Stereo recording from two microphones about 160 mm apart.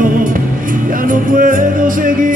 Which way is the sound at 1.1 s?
55° right (ahead or behind).